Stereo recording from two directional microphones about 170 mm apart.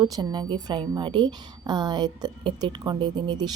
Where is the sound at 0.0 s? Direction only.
25° right (ahead or behind).